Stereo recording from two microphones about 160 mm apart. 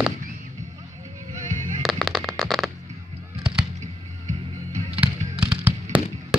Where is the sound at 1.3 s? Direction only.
50° right (ahead or behind).